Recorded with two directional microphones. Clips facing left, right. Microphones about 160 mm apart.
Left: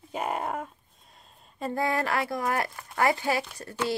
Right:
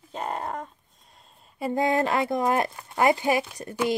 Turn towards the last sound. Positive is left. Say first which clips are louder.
# right 4 dB
turn(degrees=-15)  # may be behind; listen again after turning